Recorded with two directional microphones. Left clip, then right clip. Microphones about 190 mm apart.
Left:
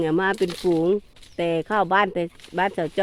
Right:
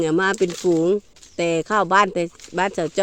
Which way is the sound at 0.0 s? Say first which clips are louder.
Right 2 dB; 15° right (ahead or behind).